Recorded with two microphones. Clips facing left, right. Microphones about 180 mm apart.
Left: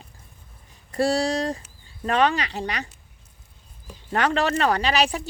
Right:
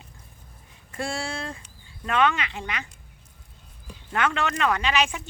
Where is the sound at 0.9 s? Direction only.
35° left (ahead or behind).